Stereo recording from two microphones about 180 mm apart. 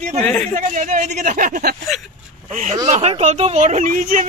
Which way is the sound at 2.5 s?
40° right (ahead or behind).